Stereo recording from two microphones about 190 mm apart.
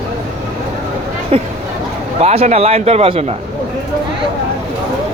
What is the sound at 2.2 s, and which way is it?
Speech, 35° right (ahead or behind).